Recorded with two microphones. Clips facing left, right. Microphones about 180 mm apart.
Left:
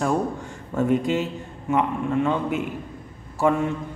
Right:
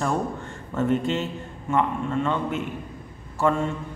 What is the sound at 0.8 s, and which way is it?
A man's voice, 10° left (ahead or behind).